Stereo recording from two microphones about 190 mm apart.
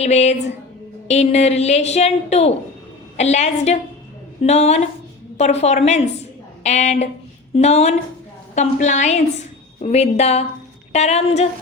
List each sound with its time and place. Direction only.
0.0 s speech: 35° left (ahead or behind)